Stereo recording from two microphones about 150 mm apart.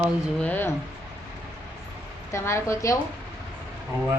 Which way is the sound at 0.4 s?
10° left (ahead or behind).